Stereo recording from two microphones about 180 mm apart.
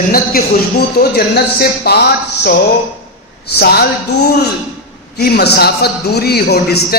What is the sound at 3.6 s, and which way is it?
Speech, 60° left (ahead or behind).